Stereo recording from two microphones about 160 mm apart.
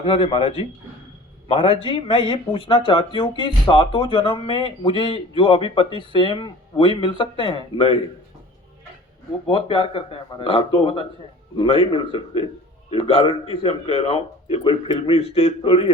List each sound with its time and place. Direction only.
0.0 s speech: 35° left (ahead or behind)
9.5 s speech: 35° left (ahead or behind)